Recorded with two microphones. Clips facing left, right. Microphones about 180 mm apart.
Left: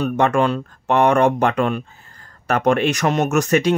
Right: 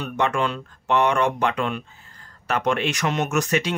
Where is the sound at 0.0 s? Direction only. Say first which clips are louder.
Left 6 dB; 45° left (ahead or behind).